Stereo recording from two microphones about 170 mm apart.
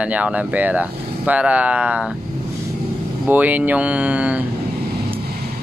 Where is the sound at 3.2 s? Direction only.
10° right (ahead or behind).